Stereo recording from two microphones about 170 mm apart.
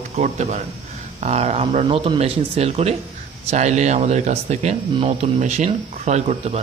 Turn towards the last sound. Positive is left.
turn(degrees=-40)  # may be behind; listen again after turning